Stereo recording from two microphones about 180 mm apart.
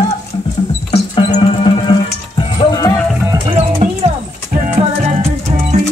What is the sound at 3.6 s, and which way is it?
Music, 35° right (ahead or behind).